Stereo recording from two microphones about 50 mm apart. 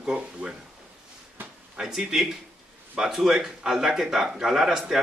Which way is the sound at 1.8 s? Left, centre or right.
Centre.